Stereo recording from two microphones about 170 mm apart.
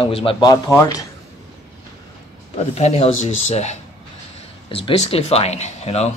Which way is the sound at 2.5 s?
40° left (ahead or behind).